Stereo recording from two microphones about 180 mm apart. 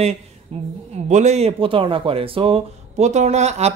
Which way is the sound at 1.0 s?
40° right (ahead or behind).